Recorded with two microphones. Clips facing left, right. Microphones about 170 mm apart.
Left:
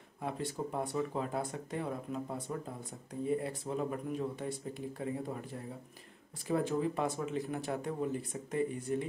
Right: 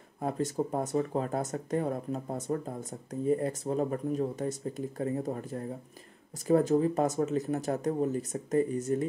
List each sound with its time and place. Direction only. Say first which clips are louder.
0.2 s speech: right 7 dB; 40° right (ahead or behind)